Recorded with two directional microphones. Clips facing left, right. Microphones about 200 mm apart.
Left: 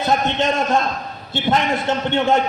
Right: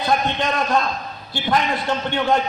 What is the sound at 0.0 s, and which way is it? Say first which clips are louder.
A man's voice: left 2 dB; 25° left (ahead or behind).